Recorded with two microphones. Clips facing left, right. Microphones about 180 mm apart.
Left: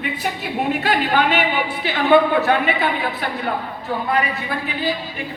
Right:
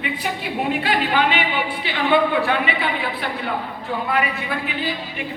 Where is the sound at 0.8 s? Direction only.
45° left (ahead or behind).